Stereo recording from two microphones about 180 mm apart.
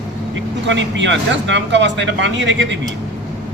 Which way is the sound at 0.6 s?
90° right.